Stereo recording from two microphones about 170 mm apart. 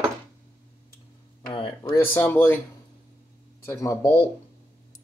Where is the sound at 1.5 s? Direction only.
30° left (ahead or behind).